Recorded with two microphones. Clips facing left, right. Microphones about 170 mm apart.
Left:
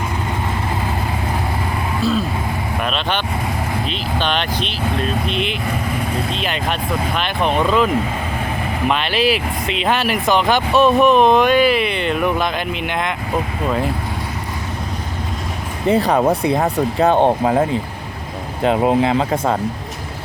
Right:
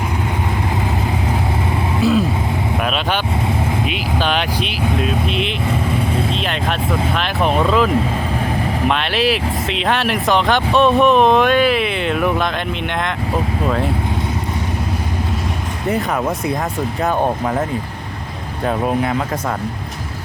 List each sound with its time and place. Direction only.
2.0 s speech: 15° right (ahead or behind)
8.9 s speech: centre (ahead or behind)
15.9 s speech: 35° left (ahead or behind)